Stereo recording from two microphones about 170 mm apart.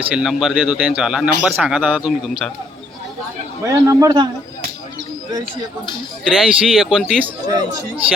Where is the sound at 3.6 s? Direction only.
20° right (ahead or behind).